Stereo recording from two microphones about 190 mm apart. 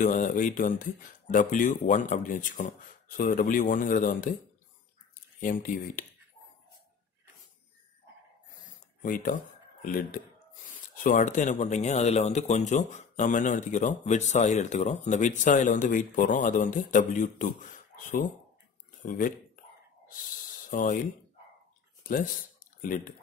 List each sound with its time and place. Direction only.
0.0 s speech: 45° left (ahead or behind)
5.4 s speech: 45° left (ahead or behind)
9.0 s speech: 45° left (ahead or behind)
20.7 s speech: 45° left (ahead or behind)
22.0 s speech: 45° left (ahead or behind)